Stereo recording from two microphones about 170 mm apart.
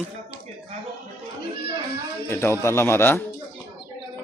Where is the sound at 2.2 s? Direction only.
15° left (ahead or behind).